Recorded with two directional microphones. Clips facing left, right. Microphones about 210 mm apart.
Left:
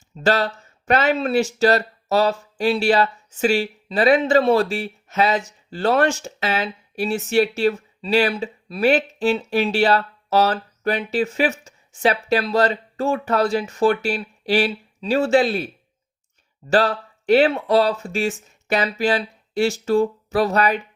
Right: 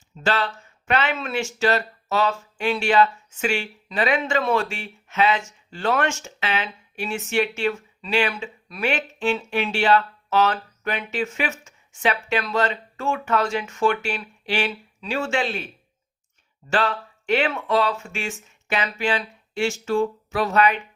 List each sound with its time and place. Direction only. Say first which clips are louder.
0.2 s speech: left 5 dB; 40° left (ahead or behind)